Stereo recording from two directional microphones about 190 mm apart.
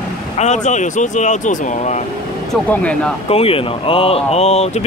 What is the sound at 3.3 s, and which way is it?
Speech, 30° left (ahead or behind).